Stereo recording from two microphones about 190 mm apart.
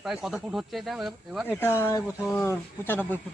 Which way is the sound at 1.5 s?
10° left (ahead or behind).